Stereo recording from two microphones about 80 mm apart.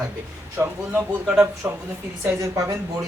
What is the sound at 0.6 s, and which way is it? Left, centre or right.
Speech, right.